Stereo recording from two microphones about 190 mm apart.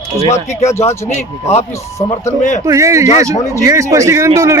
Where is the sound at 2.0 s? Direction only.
35° left (ahead or behind).